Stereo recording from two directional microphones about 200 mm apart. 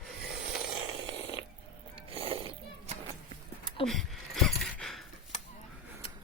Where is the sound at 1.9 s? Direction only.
30° right (ahead or behind).